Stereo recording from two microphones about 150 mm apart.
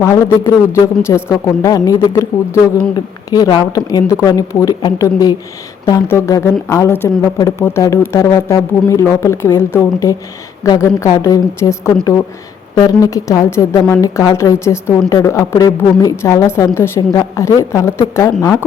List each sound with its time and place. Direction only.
0.0 s a woman's voice: 20° left (ahead or behind)